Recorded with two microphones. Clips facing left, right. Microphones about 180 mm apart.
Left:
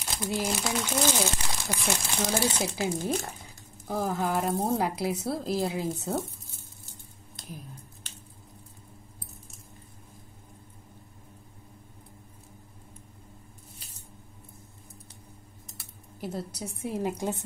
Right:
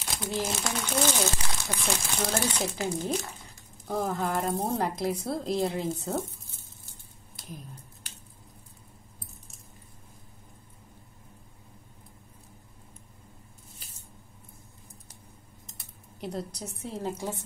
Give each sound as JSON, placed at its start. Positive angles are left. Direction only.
{"t": 0.1, "sound": "a woman's voice", "side_deg": 10}
{"t": 2.1, "sound": "a woman's voice", "side_deg": 0}
{"t": 2.8, "sound": "speech", "side_deg": 50}
{"t": 3.8, "sound": "a woman's voice", "side_deg": 0}
{"t": 15.8, "sound": "a sound", "side_deg": 5}
{"t": 16.8, "sound": "speech", "side_deg": 15}